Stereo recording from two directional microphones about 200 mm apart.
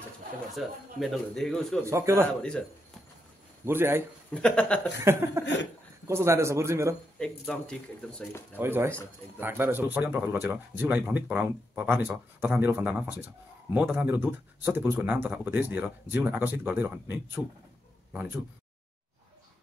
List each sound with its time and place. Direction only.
0.6 s speech: centre (ahead or behind)
1.9 s speech: 15° right (ahead or behind)
3.6 s speech: 10° right (ahead or behind)
4.3 s speech: 5° left (ahead or behind)
5.0 s speech: 15° right (ahead or behind)
5.4 s a sound: 60° left (ahead or behind)
6.0 s speech: 15° right (ahead or behind)
7.2 s speech: 5° left (ahead or behind)
8.5 s speech: 10° right (ahead or behind)